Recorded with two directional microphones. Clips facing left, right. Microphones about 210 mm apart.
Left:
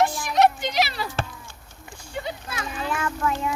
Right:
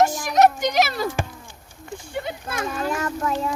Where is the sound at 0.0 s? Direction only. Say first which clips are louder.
Right 3 dB; 45° right (ahead or behind).